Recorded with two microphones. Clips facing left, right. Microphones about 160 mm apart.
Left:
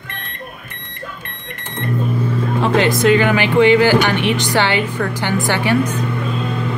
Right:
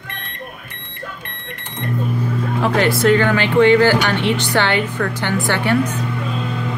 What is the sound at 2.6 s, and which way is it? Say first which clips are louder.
Speech: left 1 dB; 20° left (ahead or behind).